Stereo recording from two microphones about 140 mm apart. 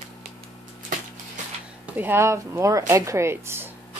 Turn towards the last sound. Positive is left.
turn(degrees=-15)  # may be behind; listen again after turning